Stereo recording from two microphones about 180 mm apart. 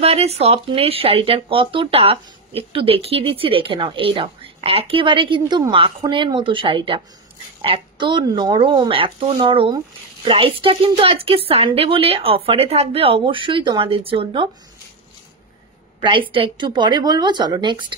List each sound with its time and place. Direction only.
0.0 s a woman's voice: 35° right (ahead or behind)
16.0 s speech: 30° right (ahead or behind)